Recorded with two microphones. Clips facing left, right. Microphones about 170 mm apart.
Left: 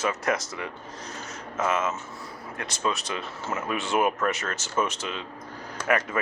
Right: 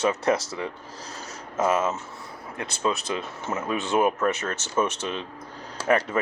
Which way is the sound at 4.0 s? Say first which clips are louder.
Right 2 dB; 5° left (ahead or behind).